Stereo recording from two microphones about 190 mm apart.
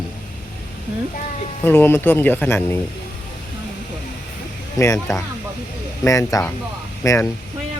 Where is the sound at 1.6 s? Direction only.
10° left (ahead or behind).